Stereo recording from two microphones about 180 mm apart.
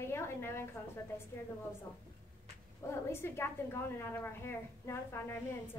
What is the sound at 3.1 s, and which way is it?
A woman's voice, 15° left (ahead or behind).